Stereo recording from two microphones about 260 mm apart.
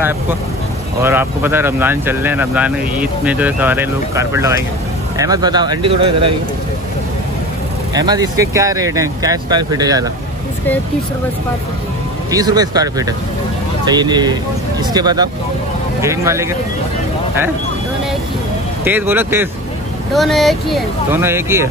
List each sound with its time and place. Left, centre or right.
1.0 s speech: centre
7.9 s speech: centre
12.3 s speech: centre
18.9 s speech: centre